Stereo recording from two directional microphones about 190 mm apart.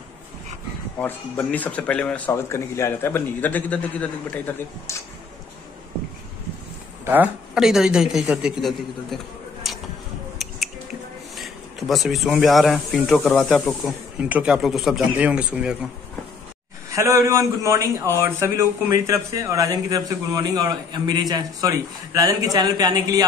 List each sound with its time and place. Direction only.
0.9 s speech: 5° left (ahead or behind)
7.1 s a man's voice: 5° right (ahead or behind)
11.3 s speech: centre (ahead or behind)
16.9 s a man's voice: 15° right (ahead or behind)